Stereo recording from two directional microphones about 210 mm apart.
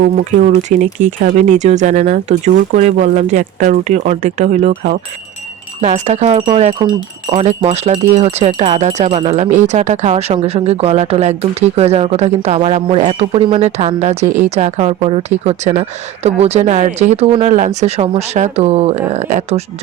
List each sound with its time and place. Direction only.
0.0 s a woman's voice: 35° right (ahead or behind)